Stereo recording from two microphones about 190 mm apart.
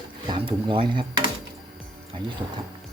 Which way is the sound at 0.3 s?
25° right (ahead or behind).